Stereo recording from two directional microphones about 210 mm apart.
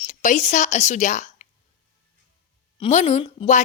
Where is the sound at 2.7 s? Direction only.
30° left (ahead or behind).